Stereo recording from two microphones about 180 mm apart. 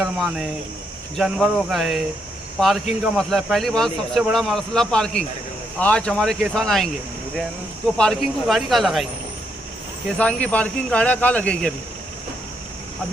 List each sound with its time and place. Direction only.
0.0 s speech: centre (ahead or behind)
7.9 s speech: 5° left (ahead or behind)
10.2 s speech: 5° left (ahead or behind)